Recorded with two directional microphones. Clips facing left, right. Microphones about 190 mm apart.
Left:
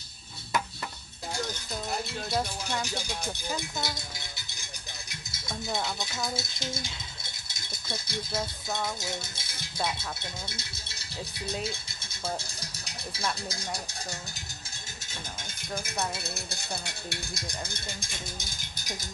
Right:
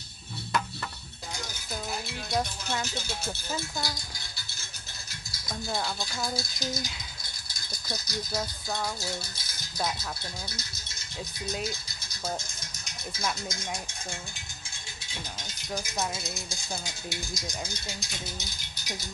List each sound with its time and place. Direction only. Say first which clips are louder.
2.0 s music: even; centre (ahead or behind)
2.8 s speech: left 1 dB; 15° left (ahead or behind)
5.8 s speech: right 1 dB; 20° left (ahead or behind)
7.4 s rattle: right 1 dB; 25° left (ahead or behind)
9.0 s speech: even; 25° left (ahead or behind)
11.6 s rattle: even; 30° left (ahead or behind)
16.2 s speech: even; 65° left (ahead or behind)